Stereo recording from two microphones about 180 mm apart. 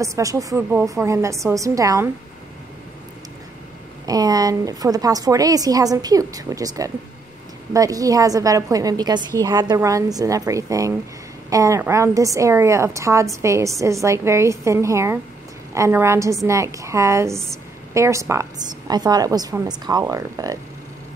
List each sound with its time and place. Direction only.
0.0 s a woman's voice: 20° right (ahead or behind)
4.0 s a woman's voice: 20° right (ahead or behind)